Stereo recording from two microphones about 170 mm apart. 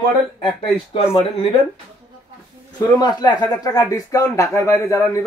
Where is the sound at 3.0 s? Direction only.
25° left (ahead or behind).